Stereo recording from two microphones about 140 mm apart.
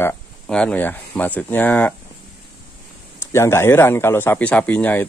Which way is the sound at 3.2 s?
20° left (ahead or behind).